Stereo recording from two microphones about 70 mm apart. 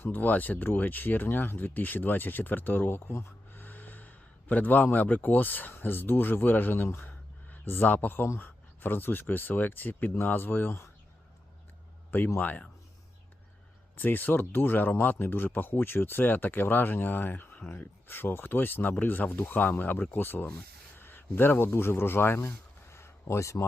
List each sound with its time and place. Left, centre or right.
0.0 s speech: left
12.4 s speech: left
13.9 s speech: left